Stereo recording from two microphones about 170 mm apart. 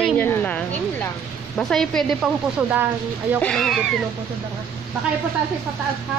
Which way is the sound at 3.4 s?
Centre (ahead or behind).